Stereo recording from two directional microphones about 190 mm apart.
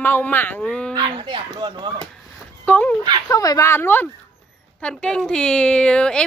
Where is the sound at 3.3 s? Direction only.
15° left (ahead or behind).